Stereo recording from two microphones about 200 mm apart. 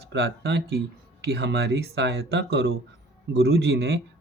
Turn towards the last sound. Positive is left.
turn(degrees=-60)  # may be behind; listen again after turning